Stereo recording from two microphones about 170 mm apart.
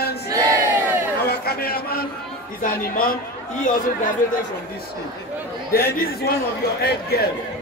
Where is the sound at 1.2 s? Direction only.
65° left (ahead or behind).